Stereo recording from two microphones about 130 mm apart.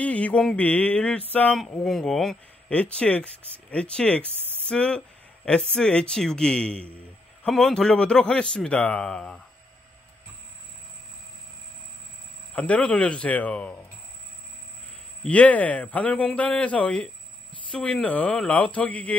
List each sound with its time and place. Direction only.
0.0 s speech: 10° left (ahead or behind)
12.5 s speech: 10° left (ahead or behind)
15.2 s speech: 10° left (ahead or behind)